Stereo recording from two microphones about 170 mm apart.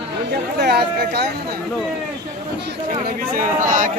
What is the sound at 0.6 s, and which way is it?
Speech, 70° right (ahead or behind).